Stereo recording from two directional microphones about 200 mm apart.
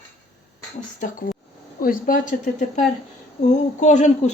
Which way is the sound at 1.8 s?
45° left (ahead or behind).